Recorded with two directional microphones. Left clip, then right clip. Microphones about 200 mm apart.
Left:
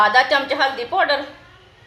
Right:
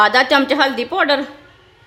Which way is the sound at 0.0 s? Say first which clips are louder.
Right 2 dB; 55° right (ahead or behind).